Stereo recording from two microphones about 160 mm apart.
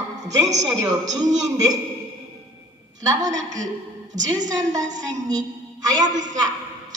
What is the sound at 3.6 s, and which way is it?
Speech, 50° right (ahead or behind).